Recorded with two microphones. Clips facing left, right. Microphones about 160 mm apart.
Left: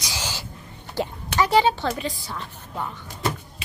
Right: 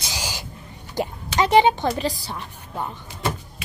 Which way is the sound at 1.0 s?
15° right (ahead or behind).